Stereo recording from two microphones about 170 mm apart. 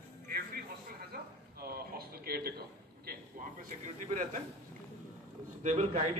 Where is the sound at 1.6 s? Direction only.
60° right (ahead or behind).